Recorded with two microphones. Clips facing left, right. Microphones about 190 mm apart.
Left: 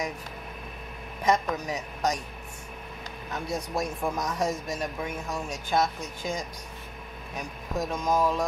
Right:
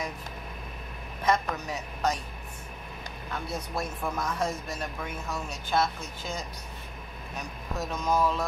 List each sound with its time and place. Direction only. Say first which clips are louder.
1.2 s a man's voice: left 2 dB; 15° left (ahead or behind)
3.5 s a man's voice: left 5 dB; 15° left (ahead or behind)
7.7 s a man's voice: left 2 dB; 10° left (ahead or behind)